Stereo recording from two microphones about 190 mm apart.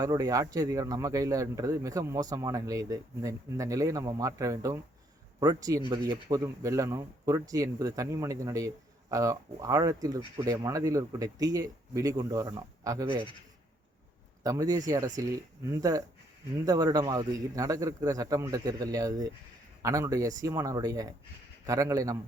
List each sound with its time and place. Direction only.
0.0 s a man's voice: 20° right (ahead or behind)
14.4 s a man's voice: 20° right (ahead or behind)